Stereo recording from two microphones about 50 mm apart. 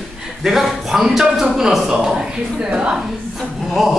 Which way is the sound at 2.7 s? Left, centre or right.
Right.